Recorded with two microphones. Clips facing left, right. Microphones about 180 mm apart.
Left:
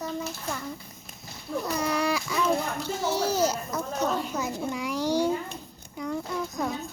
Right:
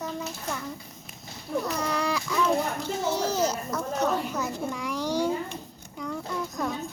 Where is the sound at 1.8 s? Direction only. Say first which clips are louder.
Left 2 dB; 5° left (ahead or behind).